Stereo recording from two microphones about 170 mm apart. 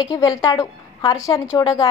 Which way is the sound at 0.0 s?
20° left (ahead or behind).